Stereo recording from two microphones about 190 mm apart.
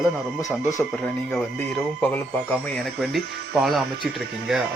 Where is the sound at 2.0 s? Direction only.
5° left (ahead or behind).